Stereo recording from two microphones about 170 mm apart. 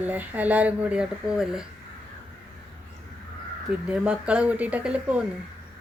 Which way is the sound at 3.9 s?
5° right (ahead or behind).